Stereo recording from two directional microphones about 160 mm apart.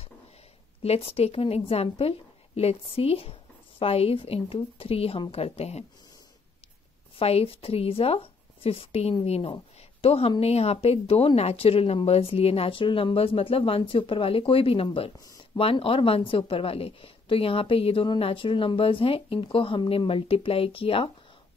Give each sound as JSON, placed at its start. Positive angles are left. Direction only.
{"t": 0.8, "sound": "a woman's voice", "side_deg": 40}
{"t": 7.2, "sound": "a woman's voice", "side_deg": 35}
{"t": 15.1, "sound": "speech", "side_deg": 20}
{"t": 15.5, "sound": "a woman's voice", "side_deg": 35}